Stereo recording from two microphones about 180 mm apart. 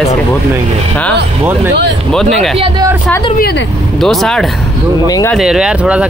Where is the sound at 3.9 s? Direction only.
Centre (ahead or behind).